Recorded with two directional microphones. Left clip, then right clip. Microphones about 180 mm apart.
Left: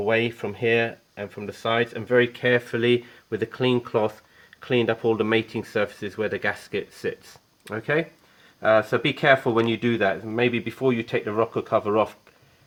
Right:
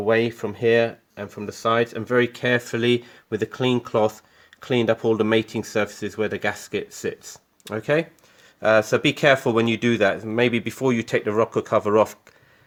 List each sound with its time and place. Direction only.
0.0 s speech: 45° right (ahead or behind)